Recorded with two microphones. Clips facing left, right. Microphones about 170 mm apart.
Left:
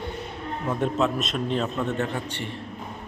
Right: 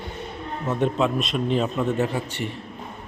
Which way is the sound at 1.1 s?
5° right (ahead or behind).